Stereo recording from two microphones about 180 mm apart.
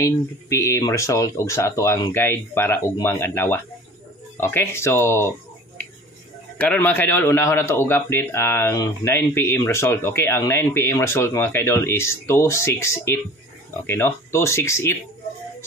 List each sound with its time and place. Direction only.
0.0 s speech: 15° left (ahead or behind)
6.6 s speech: 10° left (ahead or behind)